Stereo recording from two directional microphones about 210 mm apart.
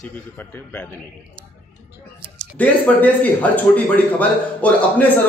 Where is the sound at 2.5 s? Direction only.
5° left (ahead or behind).